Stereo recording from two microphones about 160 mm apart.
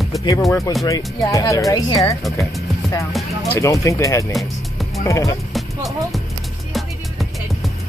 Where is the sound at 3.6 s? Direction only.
20° left (ahead or behind).